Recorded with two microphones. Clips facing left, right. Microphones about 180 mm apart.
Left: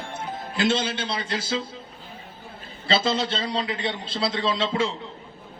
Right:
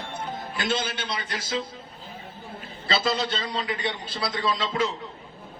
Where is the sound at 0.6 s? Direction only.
25° left (ahead or behind).